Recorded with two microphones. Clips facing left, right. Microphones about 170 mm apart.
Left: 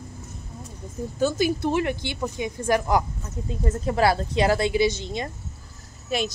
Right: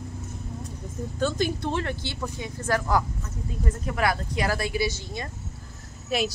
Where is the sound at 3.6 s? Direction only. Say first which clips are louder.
Left 5 dB; 30° left (ahead or behind).